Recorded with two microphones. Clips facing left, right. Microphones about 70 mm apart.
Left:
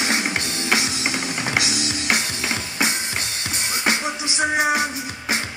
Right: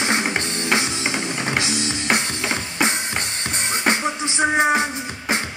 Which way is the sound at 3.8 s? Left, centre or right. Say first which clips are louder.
Right 2 dB; right.